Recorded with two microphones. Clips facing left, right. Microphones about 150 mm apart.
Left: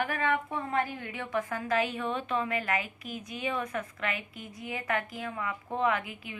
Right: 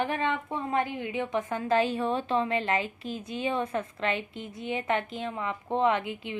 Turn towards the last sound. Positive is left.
turn(degrees=-25)  # may be behind; listen again after turning